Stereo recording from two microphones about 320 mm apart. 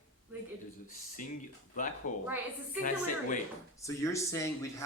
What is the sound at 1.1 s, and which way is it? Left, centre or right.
Speech, left.